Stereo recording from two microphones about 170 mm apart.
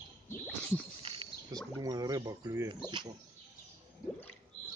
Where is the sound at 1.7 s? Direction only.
25° right (ahead or behind).